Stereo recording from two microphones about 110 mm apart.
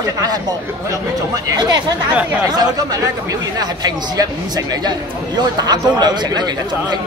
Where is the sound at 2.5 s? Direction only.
35° right (ahead or behind).